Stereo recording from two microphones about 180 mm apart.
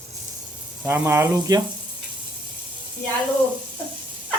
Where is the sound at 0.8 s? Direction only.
10° right (ahead or behind).